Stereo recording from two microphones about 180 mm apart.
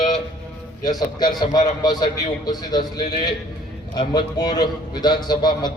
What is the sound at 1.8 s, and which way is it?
Speech, 20° left (ahead or behind).